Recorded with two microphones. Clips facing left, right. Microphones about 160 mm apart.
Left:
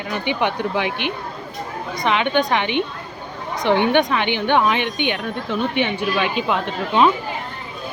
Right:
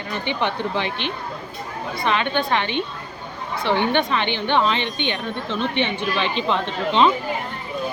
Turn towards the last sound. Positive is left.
turn(degrees=10)  # may be behind; listen again after turning